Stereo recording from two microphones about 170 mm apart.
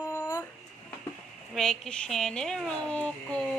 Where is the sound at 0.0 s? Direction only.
20° left (ahead or behind).